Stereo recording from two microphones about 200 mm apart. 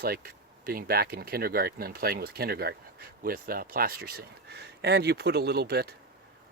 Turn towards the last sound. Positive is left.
turn(degrees=-55)  # may be behind; listen again after turning